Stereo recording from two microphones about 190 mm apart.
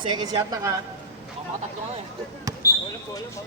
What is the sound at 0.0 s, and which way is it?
Speech, 20° right (ahead or behind).